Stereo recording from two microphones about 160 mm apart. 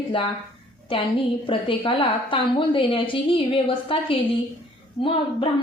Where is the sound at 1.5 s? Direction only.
30° left (ahead or behind).